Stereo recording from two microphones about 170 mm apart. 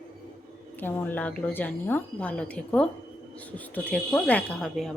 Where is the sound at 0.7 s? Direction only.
10° left (ahead or behind).